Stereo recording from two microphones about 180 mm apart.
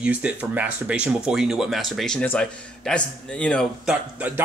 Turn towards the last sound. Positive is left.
turn(degrees=-10)  # may be behind; listen again after turning